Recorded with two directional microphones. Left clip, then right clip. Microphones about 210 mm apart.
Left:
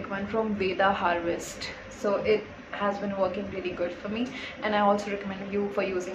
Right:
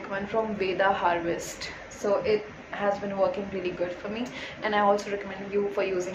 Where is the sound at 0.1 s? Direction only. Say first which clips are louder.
Right 1 dB; 5° left (ahead or behind).